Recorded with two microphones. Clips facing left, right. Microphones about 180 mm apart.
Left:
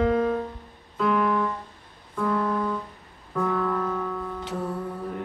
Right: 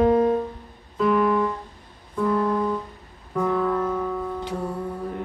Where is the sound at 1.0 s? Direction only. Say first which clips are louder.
Right 3 dB; 15° right (ahead or behind).